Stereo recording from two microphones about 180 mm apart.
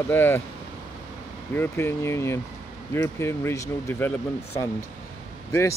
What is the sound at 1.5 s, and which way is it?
Speech, 10° left (ahead or behind).